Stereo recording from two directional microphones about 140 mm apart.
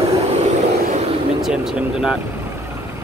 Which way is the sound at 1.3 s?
5° right (ahead or behind).